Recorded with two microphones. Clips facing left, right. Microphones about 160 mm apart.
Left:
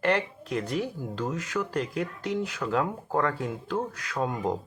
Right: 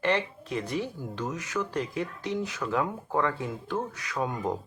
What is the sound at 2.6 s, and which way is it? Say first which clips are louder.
Speech: left 1 dB; 50° left (ahead or behind).